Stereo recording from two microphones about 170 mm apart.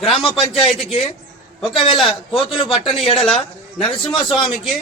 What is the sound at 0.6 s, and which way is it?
A man's voice, 30° left (ahead or behind).